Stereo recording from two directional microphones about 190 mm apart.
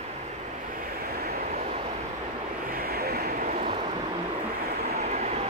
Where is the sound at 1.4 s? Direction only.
35° right (ahead or behind).